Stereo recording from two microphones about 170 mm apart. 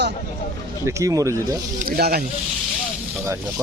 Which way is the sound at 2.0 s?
65° right (ahead or behind).